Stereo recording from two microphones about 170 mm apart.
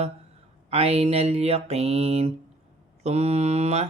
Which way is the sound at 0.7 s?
35° right (ahead or behind).